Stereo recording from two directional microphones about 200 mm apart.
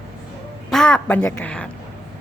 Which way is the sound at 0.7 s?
5° left (ahead or behind).